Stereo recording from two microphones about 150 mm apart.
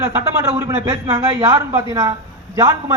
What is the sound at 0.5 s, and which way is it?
A man's voice, 20° right (ahead or behind).